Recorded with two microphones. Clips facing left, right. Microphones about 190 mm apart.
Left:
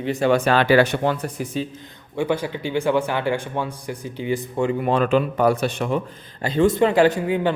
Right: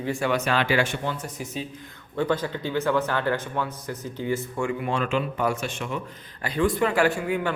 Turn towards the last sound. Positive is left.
turn(degrees=20)  # may be behind; listen again after turning